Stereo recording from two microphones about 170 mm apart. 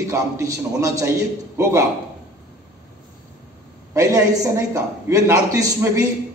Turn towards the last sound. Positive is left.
turn(degrees=-20)  # may be behind; listen again after turning